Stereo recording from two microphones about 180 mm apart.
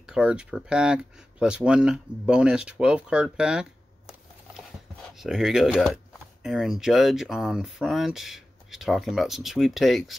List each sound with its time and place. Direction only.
0.0 s speech: 5° right (ahead or behind)
5.1 s speech: centre (ahead or behind)